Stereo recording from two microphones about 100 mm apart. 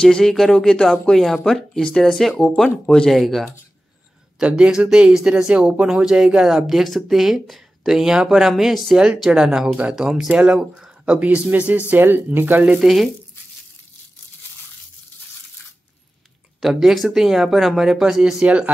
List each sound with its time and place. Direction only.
0.0 s speech: 5° left (ahead or behind)
4.4 s speech: 10° right (ahead or behind)
12.8 s speech: centre (ahead or behind)
16.6 s speech: centre (ahead or behind)